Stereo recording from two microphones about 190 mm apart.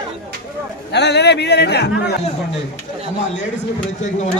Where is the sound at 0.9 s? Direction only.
65° left (ahead or behind).